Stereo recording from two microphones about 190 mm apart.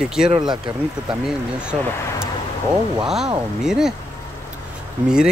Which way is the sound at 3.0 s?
Centre (ahead or behind).